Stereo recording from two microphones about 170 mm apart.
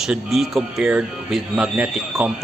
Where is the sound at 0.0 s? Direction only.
Centre (ahead or behind).